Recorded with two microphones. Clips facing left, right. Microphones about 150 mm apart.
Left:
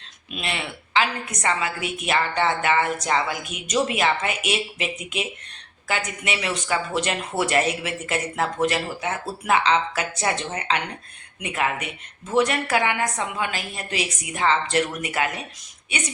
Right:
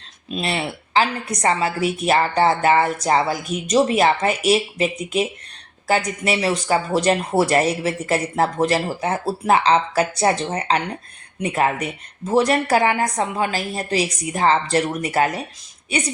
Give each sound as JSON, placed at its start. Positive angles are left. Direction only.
{"t": 0.3, "sound": "a woman's voice", "side_deg": -35}